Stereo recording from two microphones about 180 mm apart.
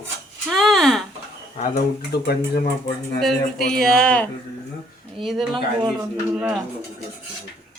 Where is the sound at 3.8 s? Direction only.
5° left (ahead or behind).